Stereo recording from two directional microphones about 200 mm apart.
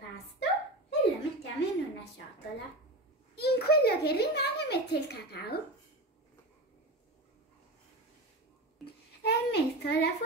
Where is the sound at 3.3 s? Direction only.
55° left (ahead or behind).